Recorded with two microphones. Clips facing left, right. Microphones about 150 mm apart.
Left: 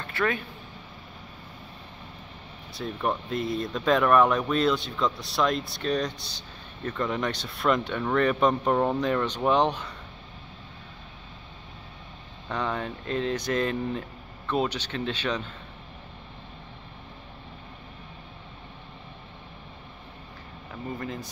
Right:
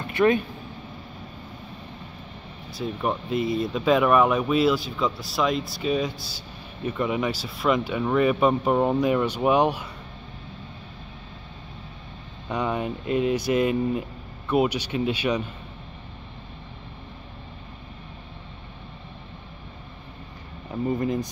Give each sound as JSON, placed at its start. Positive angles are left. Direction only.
{"t": 0.0, "sound": "vehicle", "side_deg": -20}
{"t": 2.7, "sound": "speech", "side_deg": -5}
{"t": 12.4, "sound": "speech", "side_deg": -10}
{"t": 21.0, "sound": "speech", "side_deg": -20}